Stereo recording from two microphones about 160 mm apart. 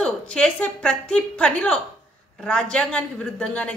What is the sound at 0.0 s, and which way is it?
A woman's voice, 5° left (ahead or behind).